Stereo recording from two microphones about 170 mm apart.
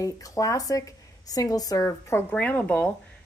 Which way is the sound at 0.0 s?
20° left (ahead or behind).